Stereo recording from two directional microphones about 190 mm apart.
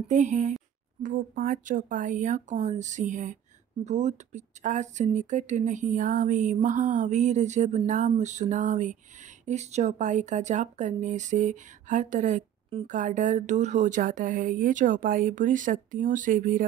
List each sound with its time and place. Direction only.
0.1 s speech: 40° right (ahead or behind)